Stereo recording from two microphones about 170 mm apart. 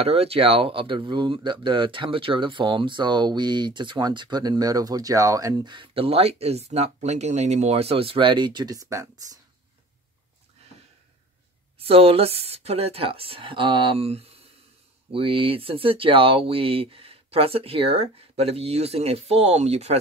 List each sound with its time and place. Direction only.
0.0 s speech: 35° right (ahead or behind); by 9.4 s 20° right (ahead or behind)
11.8 s speech: 35° right (ahead or behind)